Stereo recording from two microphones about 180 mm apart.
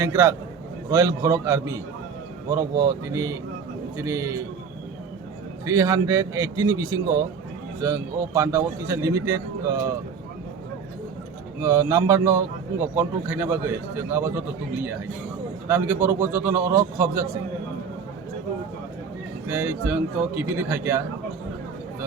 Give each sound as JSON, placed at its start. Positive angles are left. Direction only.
{"t": 0.0, "sound": "speech", "side_deg": -15}
{"t": 5.6, "sound": "speech", "side_deg": -15}
{"t": 11.6, "sound": "speech", "side_deg": -15}
{"t": 15.7, "sound": "speech", "side_deg": -10}
{"t": 19.5, "sound": "speech", "side_deg": -10}